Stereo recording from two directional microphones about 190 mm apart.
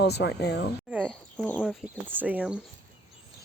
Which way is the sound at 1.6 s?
5° right (ahead or behind).